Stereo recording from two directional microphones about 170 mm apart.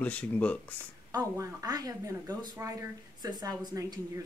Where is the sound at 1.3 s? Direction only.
20° right (ahead or behind).